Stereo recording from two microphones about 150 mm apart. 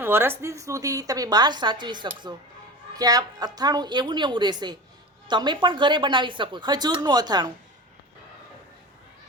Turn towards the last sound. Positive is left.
turn(degrees=-30)  # may be behind; listen again after turning